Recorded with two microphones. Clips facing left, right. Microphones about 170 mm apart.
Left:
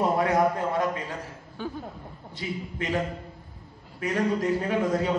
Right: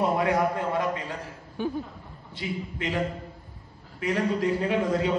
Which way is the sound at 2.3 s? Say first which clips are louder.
Right 1 dB; 40° left (ahead or behind).